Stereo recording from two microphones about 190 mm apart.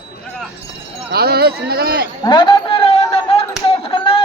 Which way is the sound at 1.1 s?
55° right (ahead or behind).